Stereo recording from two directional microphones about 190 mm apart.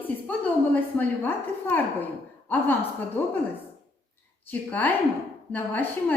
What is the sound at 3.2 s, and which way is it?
Speech, 10° left (ahead or behind).